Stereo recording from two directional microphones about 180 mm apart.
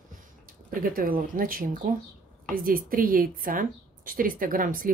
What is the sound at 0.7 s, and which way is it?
Speech, 50° right (ahead or behind).